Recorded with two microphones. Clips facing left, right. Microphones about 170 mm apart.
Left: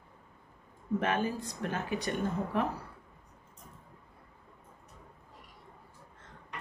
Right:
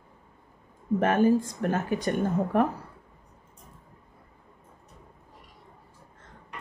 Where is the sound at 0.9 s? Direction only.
45° right (ahead or behind).